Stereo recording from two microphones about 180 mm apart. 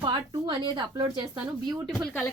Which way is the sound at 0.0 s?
30° right (ahead or behind).